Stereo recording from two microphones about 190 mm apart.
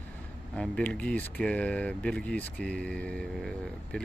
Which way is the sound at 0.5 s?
5° left (ahead or behind).